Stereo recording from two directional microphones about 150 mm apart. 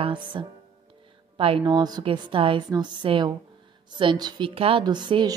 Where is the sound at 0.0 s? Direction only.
35° right (ahead or behind).